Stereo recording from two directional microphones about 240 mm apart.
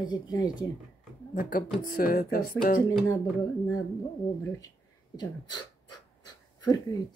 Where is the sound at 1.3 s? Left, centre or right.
Left.